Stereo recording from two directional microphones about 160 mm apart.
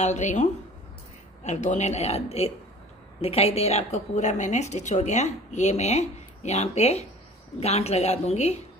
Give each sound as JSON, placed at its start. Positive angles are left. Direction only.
{"t": 0.0, "sound": "a woman's voice", "side_deg": 45}